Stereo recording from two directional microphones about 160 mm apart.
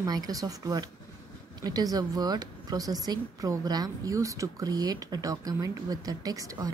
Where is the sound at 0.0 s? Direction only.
20° right (ahead or behind).